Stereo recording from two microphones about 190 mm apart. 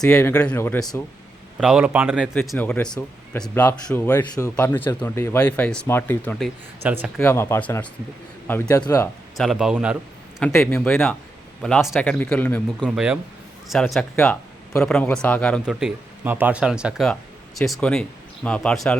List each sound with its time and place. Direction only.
0.1 s speech: 10° left (ahead or behind)
1.5 s speech: 5° right (ahead or behind)
2.5 s speech: 5° left (ahead or behind)
6.4 s speech: 10° right (ahead or behind)
7.2 s speech: 15° left (ahead or behind)
9.4 s speech: centre (ahead or behind)
10.4 s speech: 15° left (ahead or behind)